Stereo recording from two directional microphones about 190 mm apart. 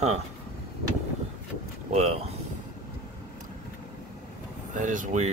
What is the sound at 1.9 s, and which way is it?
Speech, 35° right (ahead or behind).